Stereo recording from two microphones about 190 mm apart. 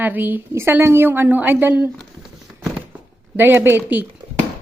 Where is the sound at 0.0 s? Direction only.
10° right (ahead or behind).